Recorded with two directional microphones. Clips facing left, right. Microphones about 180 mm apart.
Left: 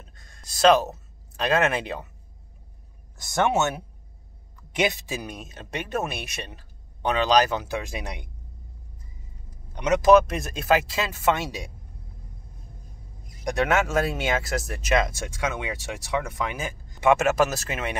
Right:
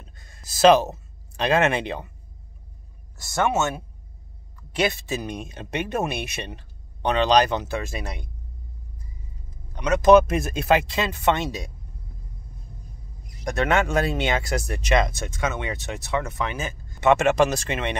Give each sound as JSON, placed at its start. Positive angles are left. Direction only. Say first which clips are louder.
{"t": 0.0, "sound": "a sound", "louder": "right 1 dB", "side_deg": 0}
{"t": 3.2, "sound": "speech", "louder": "even", "side_deg": 15}
{"t": 9.7, "sound": "vehicle", "louder": "left 1 dB", "side_deg": 20}
{"t": 10.0, "sound": "speech", "louder": "right 3 dB", "side_deg": 0}
{"t": 13.4, "sound": "speech", "louder": "right 1 dB", "side_deg": 10}